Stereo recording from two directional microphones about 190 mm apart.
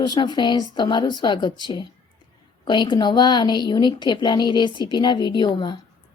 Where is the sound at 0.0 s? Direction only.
25° left (ahead or behind).